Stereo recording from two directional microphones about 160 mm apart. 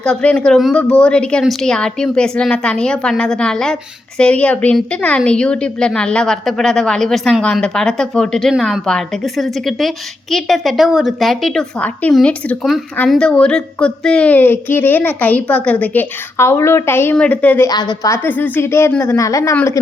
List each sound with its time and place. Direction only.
0.0 s a woman's voice: 5° left (ahead or behind)
17.7 s a woman's voice: 25° left (ahead or behind)